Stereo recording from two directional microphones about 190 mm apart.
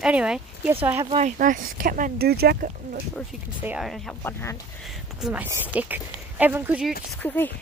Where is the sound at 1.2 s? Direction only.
40° right (ahead or behind).